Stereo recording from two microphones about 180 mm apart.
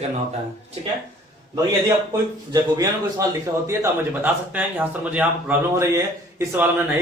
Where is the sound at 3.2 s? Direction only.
20° right (ahead or behind).